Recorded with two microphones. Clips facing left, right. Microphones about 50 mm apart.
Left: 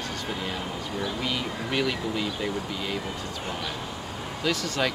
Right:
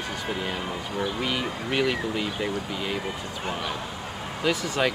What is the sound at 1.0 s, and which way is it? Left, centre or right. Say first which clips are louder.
Speech: right 2 dB; centre.